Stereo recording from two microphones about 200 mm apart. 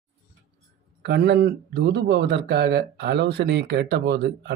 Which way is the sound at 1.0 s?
55° right (ahead or behind).